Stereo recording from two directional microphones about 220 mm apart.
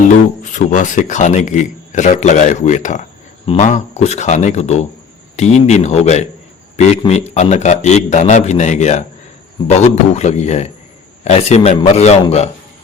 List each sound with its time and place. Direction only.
0.5 s a man's voice: 35° left (ahead or behind)